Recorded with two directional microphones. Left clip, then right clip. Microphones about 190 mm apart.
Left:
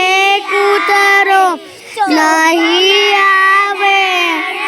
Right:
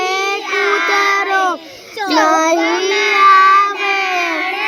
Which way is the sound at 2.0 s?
45° left (ahead or behind).